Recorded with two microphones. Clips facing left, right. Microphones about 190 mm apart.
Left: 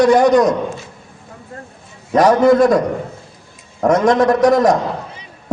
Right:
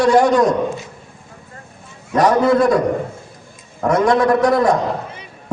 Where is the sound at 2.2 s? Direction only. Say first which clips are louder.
Left 3 dB; 45° left (ahead or behind).